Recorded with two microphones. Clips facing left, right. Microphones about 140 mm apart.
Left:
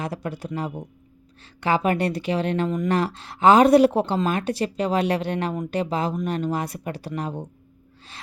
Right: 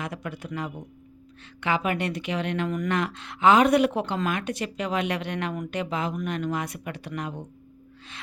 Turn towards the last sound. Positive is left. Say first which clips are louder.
# left 4 dB
turn(degrees=35)  # may be behind; listen again after turning